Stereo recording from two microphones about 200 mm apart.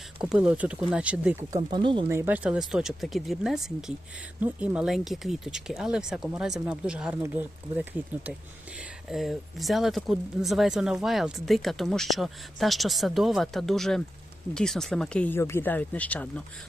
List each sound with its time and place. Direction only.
0.2 s speech: 5° right (ahead or behind)
1.5 s speech: 25° right (ahead or behind)
2.0 s speech: 10° right (ahead or behind)
9.0 s speech: centre (ahead or behind)